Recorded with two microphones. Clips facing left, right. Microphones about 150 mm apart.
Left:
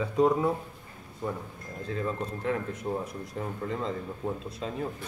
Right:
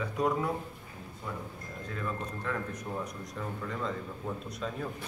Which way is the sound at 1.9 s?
25° left (ahead or behind).